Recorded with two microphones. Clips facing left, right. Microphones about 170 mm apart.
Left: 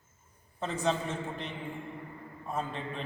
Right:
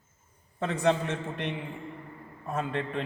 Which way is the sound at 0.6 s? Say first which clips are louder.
Right 5 dB; 65° right (ahead or behind).